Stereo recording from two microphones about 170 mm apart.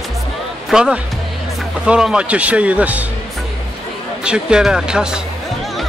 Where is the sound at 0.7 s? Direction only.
5° right (ahead or behind).